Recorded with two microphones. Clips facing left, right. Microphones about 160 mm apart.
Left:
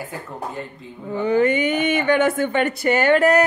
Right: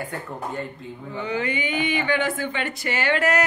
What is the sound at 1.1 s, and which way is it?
A woman's voice, 45° left (ahead or behind).